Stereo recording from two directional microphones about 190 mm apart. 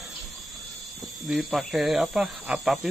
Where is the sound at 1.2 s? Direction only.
Centre (ahead or behind).